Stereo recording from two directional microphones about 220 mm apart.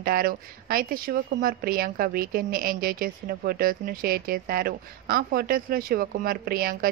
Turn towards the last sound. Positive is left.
turn(degrees=-40)  # may be behind; listen again after turning